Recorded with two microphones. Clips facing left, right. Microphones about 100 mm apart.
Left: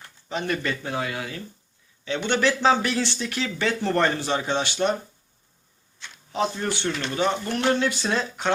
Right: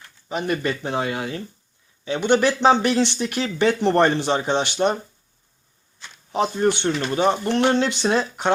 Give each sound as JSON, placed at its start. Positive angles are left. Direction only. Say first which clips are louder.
{"t": 0.3, "sound": "speech", "louder": "right 3 dB", "side_deg": -15}
{"t": 2.0, "sound": "speech", "louder": "right 4 dB", "side_deg": -15}
{"t": 6.3, "sound": "speech", "louder": "right 6 dB", "side_deg": -20}